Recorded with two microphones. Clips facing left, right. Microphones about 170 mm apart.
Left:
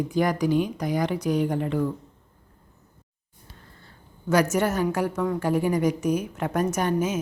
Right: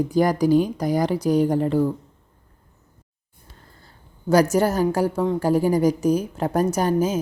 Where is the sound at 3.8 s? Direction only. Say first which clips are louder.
Right 4 dB; 35° right (ahead or behind).